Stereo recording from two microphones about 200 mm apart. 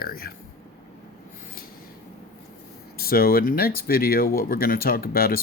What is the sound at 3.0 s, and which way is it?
Speech, 50° left (ahead or behind).